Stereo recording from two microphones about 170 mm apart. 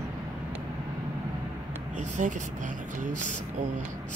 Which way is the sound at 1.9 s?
45° right (ahead or behind).